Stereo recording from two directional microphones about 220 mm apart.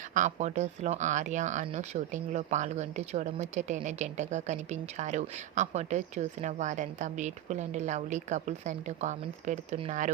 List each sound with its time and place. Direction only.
0.1 s speech: 35° right (ahead or behind)